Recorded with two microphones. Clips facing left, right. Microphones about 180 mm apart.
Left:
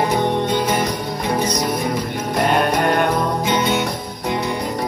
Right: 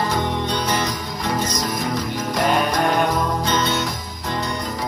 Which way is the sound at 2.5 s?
Centre (ahead or behind).